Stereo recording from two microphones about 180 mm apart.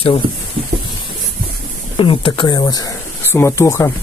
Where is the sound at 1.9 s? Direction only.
30° left (ahead or behind).